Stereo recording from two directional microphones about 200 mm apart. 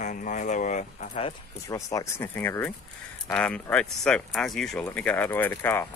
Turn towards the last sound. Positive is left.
turn(degrees=10)  # may be behind; listen again after turning